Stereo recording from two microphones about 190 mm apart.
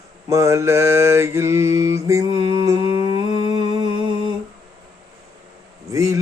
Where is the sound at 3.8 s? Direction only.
25° right (ahead or behind).